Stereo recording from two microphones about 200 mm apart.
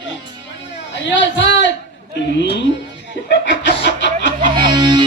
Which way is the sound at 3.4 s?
60° left (ahead or behind).